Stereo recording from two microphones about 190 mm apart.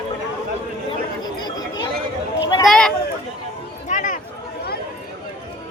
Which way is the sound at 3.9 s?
40° left (ahead or behind).